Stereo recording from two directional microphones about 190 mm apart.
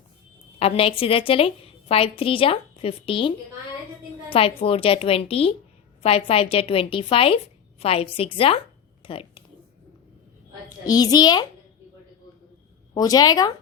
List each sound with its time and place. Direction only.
0.6 s a woman's voice: 30° left (ahead or behind)
9.0 s a sound: 30° left (ahead or behind)
10.8 s a woman's voice: 20° left (ahead or behind)
12.9 s a woman's voice: 20° left (ahead or behind)